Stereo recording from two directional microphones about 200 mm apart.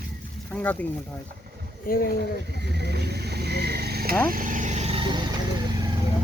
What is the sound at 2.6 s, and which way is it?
Vehicle, 55° right (ahead or behind).